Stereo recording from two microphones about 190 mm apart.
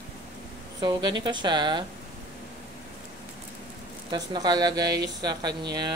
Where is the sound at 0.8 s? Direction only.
25° right (ahead or behind).